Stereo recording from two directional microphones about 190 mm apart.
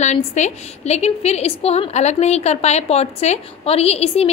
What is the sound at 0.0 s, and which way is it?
A woman's voice, 35° left (ahead or behind).